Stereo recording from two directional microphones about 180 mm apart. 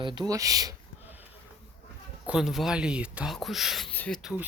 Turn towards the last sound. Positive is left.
turn(degrees=-5)  # may be behind; listen again after turning